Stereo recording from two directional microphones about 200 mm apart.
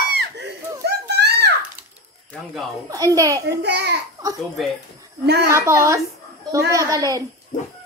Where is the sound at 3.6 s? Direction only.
55° right (ahead or behind).